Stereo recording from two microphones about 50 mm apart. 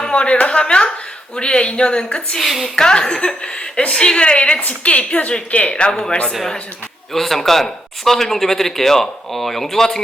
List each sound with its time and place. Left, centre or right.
0.0 s a woman's voice: left
2.4 s a woman's voice: centre
2.7 s a woman's voice: centre